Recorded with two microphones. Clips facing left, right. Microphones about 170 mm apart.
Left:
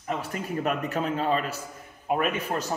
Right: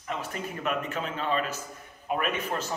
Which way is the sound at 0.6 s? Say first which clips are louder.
Left 4 dB; 35° left (ahead or behind).